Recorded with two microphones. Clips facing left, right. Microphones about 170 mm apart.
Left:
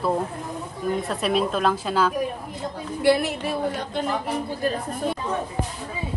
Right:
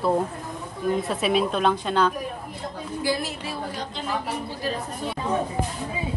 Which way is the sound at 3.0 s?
65° left (ahead or behind).